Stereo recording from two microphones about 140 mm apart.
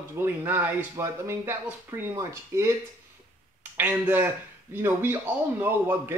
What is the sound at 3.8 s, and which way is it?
Speech, 15° right (ahead or behind).